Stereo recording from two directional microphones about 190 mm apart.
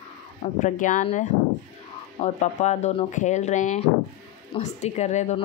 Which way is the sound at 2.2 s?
40° left (ahead or behind).